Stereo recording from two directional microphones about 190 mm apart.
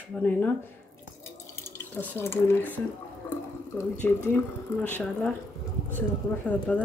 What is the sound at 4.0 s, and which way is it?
A woman's voice, 10° left (ahead or behind).